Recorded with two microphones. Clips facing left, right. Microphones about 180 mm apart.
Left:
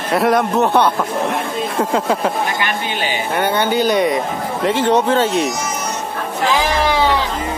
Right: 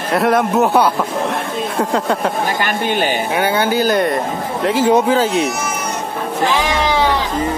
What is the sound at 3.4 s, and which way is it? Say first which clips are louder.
Speech: left 1 dB; 5° right (ahead or behind).